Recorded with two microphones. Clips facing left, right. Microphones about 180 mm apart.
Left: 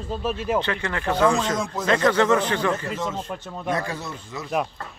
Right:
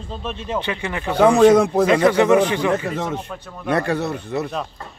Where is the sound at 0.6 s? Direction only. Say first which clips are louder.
Right 1 dB; 15° right (ahead or behind).